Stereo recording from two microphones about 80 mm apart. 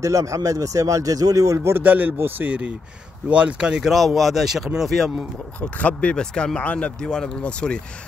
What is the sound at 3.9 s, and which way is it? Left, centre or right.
Speech, centre.